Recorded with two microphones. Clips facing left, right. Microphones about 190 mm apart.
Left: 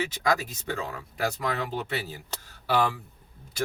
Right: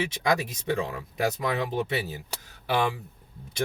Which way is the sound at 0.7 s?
25° right (ahead or behind).